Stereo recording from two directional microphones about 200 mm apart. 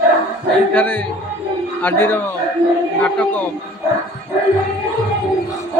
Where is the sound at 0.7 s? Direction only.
10° left (ahead or behind).